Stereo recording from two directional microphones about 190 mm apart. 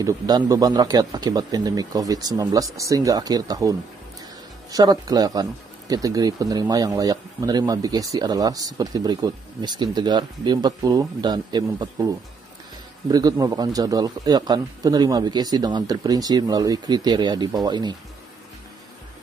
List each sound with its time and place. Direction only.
0.0 s speech: 20° right (ahead or behind)
13.1 s speech: 20° right (ahead or behind)